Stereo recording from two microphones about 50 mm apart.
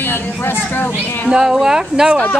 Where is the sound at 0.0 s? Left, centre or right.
Left.